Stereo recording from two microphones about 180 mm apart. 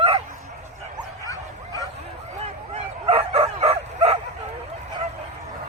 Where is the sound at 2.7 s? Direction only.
35° right (ahead or behind).